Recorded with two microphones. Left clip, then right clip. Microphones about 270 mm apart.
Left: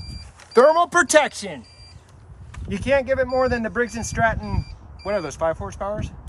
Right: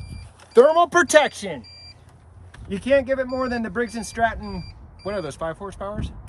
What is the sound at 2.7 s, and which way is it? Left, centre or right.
Speech, centre.